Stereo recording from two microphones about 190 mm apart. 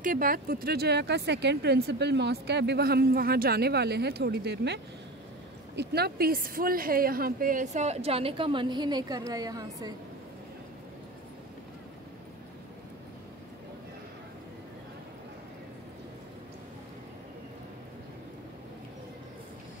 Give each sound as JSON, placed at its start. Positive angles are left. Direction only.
{"t": 0.0, "sound": "speech", "side_deg": -50}
{"t": 5.8, "sound": "a woman's voice", "side_deg": -55}